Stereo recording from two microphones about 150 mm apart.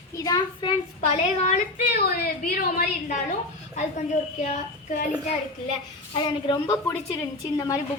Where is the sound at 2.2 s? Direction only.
85° left.